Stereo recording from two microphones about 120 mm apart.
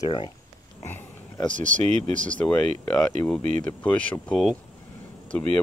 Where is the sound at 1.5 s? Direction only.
90° right.